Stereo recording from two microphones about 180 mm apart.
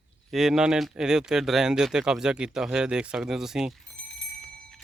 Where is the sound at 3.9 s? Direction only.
90° left.